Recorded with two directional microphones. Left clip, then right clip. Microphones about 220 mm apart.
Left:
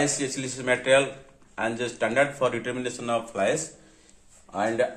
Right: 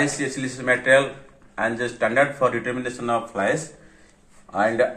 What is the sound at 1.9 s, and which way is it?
A man's voice, 35° left (ahead or behind).